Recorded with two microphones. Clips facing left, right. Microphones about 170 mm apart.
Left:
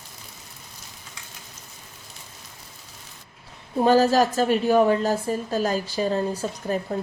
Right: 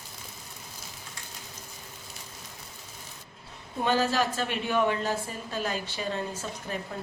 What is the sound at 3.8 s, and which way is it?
A woman's voice, 40° left (ahead or behind).